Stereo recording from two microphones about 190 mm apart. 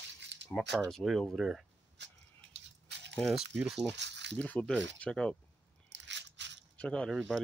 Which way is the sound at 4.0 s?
65° right (ahead or behind).